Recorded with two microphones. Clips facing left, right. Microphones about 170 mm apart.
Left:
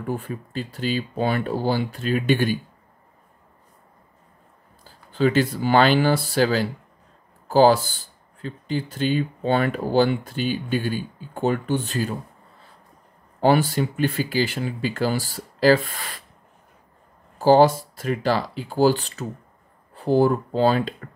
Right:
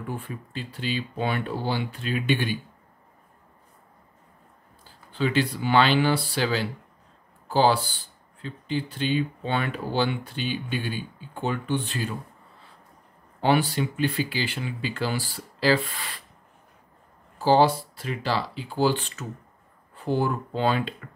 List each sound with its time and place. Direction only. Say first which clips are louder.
0.0 s speech: left 6 dB; 45° left (ahead or behind)
5.1 s speech: left 5 dB; 45° left (ahead or behind)
13.4 s speech: left 4 dB; 45° left (ahead or behind)
17.4 s speech: left 4 dB; 45° left (ahead or behind)